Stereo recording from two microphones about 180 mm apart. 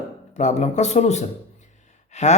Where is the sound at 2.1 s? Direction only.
40° left (ahead or behind).